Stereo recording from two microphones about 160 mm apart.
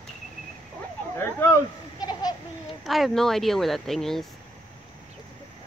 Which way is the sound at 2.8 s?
Centre (ahead or behind).